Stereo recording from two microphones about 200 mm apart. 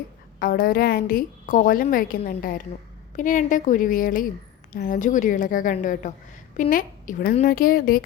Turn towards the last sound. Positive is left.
turn(degrees=45)  # may be behind; listen again after turning